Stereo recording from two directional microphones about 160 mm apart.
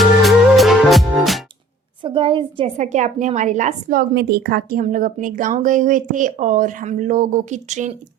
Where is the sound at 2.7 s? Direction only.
45° right (ahead or behind).